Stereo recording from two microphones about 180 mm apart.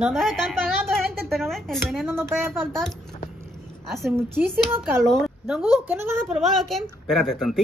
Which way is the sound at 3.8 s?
Centre (ahead or behind).